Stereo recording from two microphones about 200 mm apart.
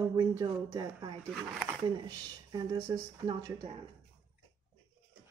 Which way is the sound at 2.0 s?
20° right (ahead or behind).